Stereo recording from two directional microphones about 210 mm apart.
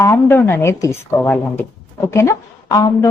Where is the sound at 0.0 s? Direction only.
10° left (ahead or behind).